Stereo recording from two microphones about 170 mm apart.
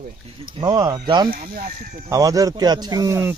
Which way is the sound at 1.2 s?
55° right (ahead or behind).